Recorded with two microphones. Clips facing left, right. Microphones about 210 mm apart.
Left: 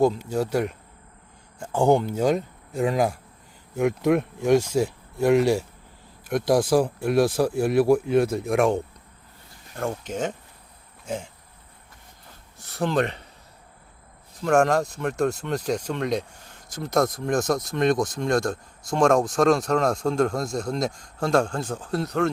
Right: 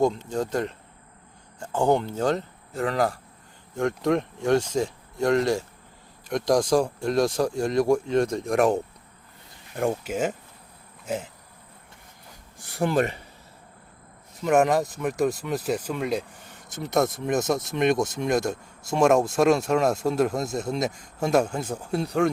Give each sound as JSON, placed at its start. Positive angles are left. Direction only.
{"t": 0.0, "sound": "speech", "side_deg": 10}
{"t": 9.7, "sound": "a man's voice", "side_deg": -10}
{"t": 12.5, "sound": "a man's voice", "side_deg": -15}
{"t": 14.4, "sound": "speech", "side_deg": -5}
{"t": 17.9, "sound": "speech", "side_deg": -25}
{"t": 18.9, "sound": "a man's voice", "side_deg": -5}